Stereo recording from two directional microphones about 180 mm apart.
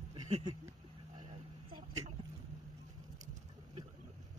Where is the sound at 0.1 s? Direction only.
25° right (ahead or behind).